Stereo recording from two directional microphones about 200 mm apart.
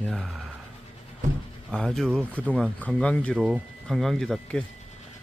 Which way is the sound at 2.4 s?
5° right (ahead or behind).